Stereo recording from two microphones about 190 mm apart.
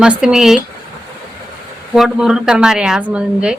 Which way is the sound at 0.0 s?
5° right (ahead or behind).